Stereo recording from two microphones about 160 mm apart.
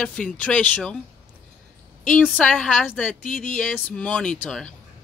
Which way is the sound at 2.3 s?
5° left (ahead or behind).